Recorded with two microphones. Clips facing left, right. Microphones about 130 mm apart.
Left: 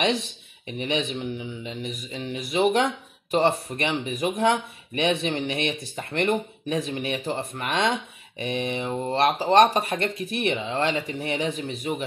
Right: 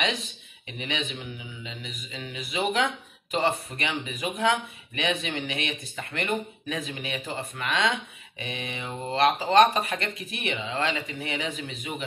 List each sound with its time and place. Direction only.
0.7 s speech: 45° left (ahead or behind)